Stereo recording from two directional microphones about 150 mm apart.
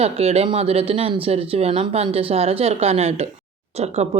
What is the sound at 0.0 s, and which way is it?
Speech, 40° right (ahead or behind).